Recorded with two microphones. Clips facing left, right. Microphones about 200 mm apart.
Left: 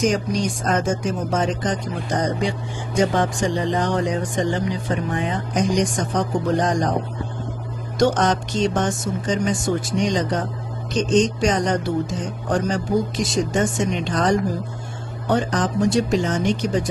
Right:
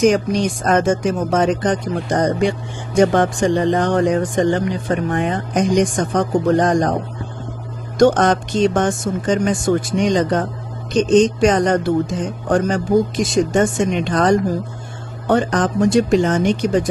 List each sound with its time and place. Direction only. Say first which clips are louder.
1.3 s speech: right 6 dB; 65° right (ahead or behind)
8.0 s speech: right 5 dB; 55° right (ahead or behind)